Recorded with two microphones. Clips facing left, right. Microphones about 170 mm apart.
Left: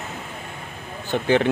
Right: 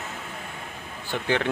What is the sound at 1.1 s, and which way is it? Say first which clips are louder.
Speech: left 6 dB; 20° left (ahead or behind).